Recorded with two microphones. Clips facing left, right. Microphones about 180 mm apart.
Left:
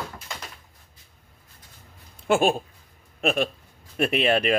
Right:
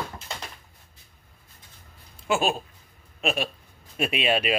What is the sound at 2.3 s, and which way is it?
Speech, 55° left (ahead or behind).